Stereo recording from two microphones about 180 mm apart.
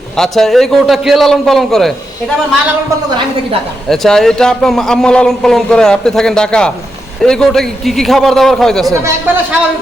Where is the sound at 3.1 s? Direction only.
25° right (ahead or behind).